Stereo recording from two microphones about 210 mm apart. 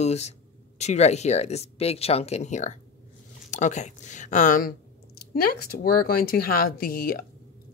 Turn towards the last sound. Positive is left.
turn(degrees=45)  # may be behind; listen again after turning